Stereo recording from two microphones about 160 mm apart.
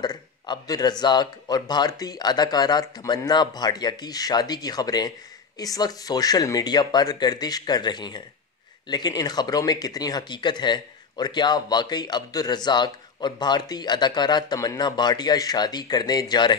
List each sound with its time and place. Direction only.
0.0 s speech: 25° left (ahead or behind)